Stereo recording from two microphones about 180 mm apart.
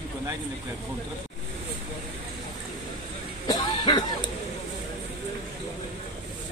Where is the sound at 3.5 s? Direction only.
20° left (ahead or behind).